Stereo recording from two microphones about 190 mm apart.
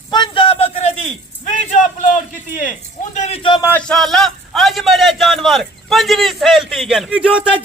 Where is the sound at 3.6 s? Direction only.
10° left (ahead or behind).